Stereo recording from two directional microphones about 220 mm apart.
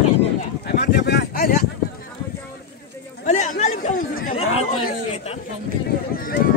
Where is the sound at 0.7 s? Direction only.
45° left (ahead or behind).